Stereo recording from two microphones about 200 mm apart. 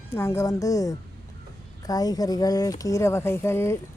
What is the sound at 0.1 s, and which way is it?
Speech, 15° left (ahead or behind).